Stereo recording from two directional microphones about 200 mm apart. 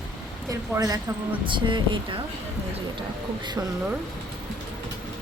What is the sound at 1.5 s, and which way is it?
Speech, 25° right (ahead or behind).